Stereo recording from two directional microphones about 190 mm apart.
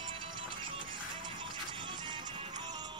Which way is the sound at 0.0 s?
25° right (ahead or behind).